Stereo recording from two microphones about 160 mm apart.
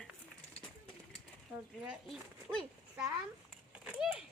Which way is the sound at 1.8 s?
5° right (ahead or behind).